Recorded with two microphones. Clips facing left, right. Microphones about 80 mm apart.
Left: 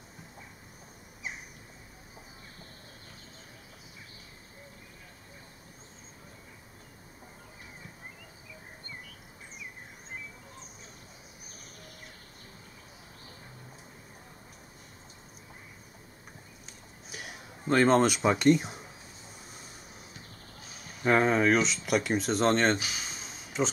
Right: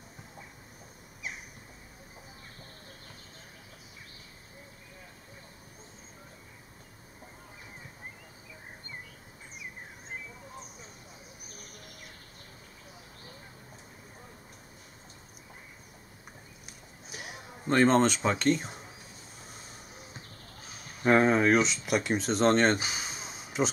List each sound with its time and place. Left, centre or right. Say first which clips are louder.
17.1 s speech: right 1 dB; centre
21.0 s speech: right 1 dB; centre
22.8 s speech: right 2 dB; right
23.6 s speech: right 1 dB; centre